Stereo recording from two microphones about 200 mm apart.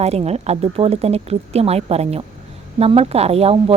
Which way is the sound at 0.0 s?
30° right (ahead or behind).